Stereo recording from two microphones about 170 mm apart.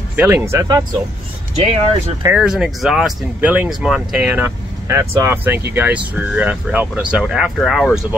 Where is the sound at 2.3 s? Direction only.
5° right (ahead or behind).